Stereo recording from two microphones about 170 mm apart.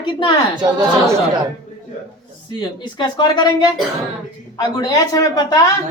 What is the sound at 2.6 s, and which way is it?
A woman's voice, 25° left (ahead or behind).